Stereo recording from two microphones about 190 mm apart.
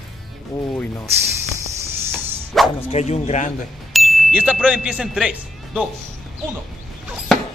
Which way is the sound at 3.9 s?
Centre (ahead or behind).